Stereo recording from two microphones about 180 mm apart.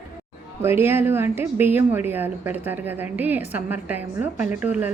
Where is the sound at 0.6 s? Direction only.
10° right (ahead or behind).